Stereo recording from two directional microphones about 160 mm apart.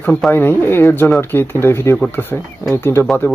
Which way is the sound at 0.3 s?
15° left (ahead or behind).